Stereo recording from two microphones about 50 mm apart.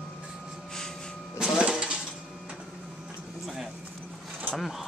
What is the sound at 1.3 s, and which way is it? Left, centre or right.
Printer, centre.